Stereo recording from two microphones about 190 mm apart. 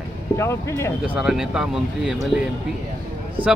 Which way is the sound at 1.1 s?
5° right (ahead or behind).